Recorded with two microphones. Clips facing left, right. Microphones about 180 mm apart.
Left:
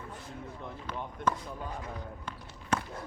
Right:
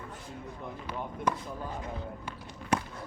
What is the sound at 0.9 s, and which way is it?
Speech, 10° right (ahead or behind).